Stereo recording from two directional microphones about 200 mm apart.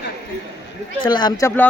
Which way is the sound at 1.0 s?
20° left (ahead or behind).